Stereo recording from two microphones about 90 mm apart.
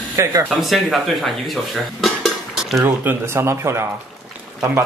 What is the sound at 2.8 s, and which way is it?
Speech, 25° right (ahead or behind).